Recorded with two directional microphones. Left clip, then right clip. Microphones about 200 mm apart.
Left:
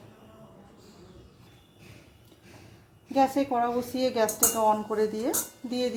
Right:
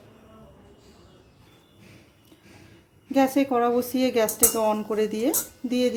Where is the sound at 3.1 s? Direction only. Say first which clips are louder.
Right 3 dB; 30° right (ahead or behind).